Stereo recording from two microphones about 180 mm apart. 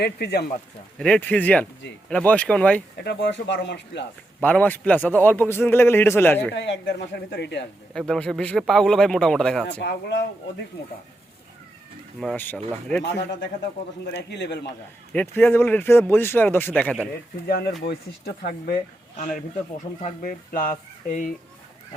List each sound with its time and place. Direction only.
0.0 s speech: 65° left (ahead or behind)
0.9 s a man's voice: 5° left (ahead or behind)
3.0 s speech: 75° left (ahead or behind)
4.4 s a man's voice: 5° left (ahead or behind)
6.5 s speech: 75° left (ahead or behind)
7.9 s speech: 5° left (ahead or behind)
9.8 s speech: 80° left
12.2 s speech: 5° left (ahead or behind)
14.0 s speech: 70° left (ahead or behind)
15.1 s a man's voice: 10° left (ahead or behind)
17.5 s speech: 60° left (ahead or behind)
20.1 s speech: 45° left (ahead or behind)